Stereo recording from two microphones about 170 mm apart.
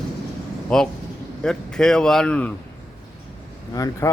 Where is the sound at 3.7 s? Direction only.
20° left (ahead or behind).